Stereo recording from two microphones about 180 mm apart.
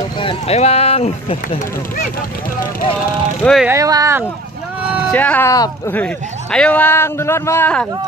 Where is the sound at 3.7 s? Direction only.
20° right (ahead or behind).